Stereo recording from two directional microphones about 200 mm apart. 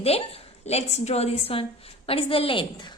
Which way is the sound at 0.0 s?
30° left (ahead or behind).